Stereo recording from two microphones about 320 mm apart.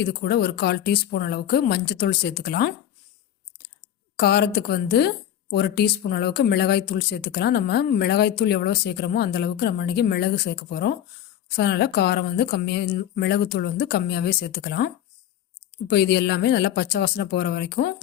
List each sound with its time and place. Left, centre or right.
0.0 s speech: left
4.2 s speech: left
15.9 s speech: left